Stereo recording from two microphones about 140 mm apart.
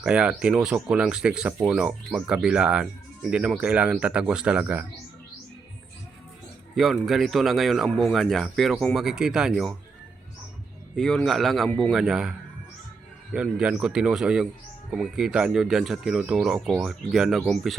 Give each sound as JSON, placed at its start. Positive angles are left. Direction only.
{"t": 0.0, "sound": "speech", "side_deg": -5}
{"t": 6.7, "sound": "speech", "side_deg": 0}
{"t": 10.9, "sound": "speech", "side_deg": 5}
{"t": 13.3, "sound": "speech", "side_deg": -5}